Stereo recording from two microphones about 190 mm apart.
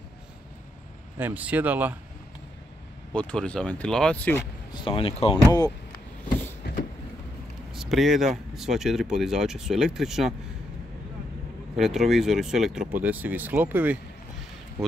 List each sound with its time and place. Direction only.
1.1 s speech: 10° right (ahead or behind)
3.1 s speech: 5° left (ahead or behind)
4.7 s speech: 30° left (ahead or behind)
7.7 s speech: centre (ahead or behind)
11.7 s speech: centre (ahead or behind)